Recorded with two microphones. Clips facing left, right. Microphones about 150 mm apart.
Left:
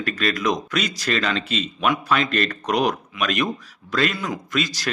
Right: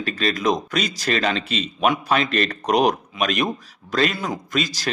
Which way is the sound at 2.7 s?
35° right (ahead or behind).